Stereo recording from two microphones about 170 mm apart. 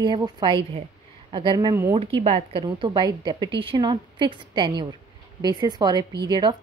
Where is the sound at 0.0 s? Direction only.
25° right (ahead or behind).